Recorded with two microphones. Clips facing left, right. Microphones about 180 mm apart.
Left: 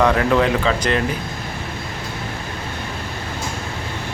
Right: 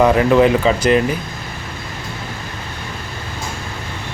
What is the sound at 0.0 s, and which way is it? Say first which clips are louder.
Speech: right 4 dB; 15° right (ahead or behind).